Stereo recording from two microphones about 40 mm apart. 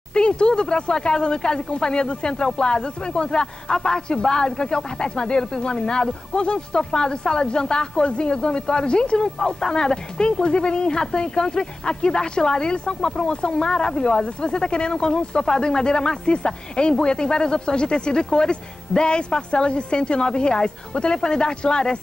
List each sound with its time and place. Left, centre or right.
0.1 s speech: left
9.4 s speech: centre